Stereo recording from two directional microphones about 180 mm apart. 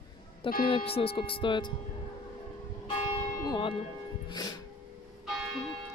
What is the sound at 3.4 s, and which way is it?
Church bell, 25° left (ahead or behind).